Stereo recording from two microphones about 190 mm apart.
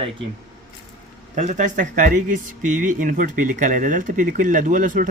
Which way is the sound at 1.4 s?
40° right (ahead or behind).